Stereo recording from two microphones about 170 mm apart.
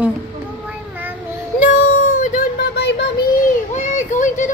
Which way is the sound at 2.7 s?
80° left.